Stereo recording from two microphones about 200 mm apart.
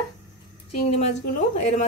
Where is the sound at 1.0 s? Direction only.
35° left (ahead or behind).